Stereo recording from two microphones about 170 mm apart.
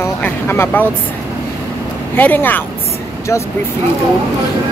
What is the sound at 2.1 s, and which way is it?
Speech, 10° left (ahead or behind).